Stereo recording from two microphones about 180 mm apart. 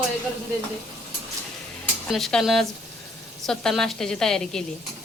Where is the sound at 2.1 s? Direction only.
Centre (ahead or behind).